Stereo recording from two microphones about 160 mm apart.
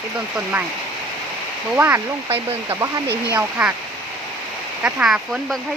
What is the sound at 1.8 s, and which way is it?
Speech, 15° right (ahead or behind).